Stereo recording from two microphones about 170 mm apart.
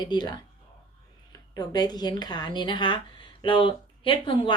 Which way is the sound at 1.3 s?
25° left (ahead or behind).